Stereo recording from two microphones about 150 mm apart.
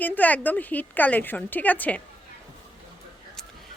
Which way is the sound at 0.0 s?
10° left (ahead or behind).